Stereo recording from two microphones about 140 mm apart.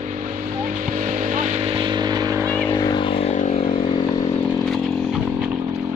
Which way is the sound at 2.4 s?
10° left (ahead or behind).